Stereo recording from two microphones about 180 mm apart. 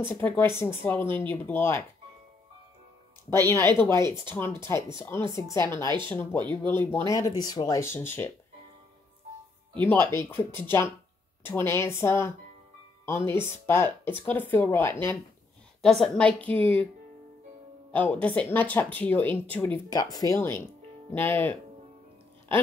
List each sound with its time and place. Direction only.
0.1 s speech: 10° left (ahead or behind)
3.3 s speech: 15° left (ahead or behind)
9.8 s speech: 15° left (ahead or behind)
17.9 s speech: 10° left (ahead or behind)